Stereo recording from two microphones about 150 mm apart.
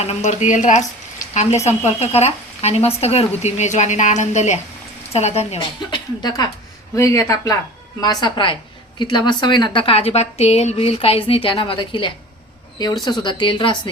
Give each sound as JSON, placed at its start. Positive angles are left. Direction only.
{"t": 0.0, "sound": "a woman's voice", "side_deg": 45}